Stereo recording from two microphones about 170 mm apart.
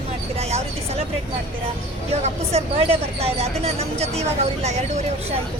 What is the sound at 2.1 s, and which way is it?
Speech, 40° right (ahead or behind).